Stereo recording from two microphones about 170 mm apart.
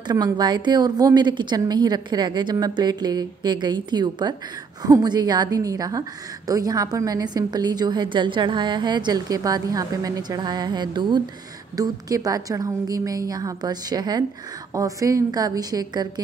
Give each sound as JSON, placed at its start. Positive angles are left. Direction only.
{"t": 0.1, "sound": "a woman's voice", "side_deg": -25}